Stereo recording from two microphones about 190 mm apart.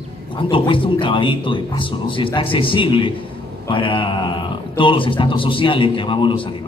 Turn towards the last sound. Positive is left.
turn(degrees=25)  # may be behind; listen again after turning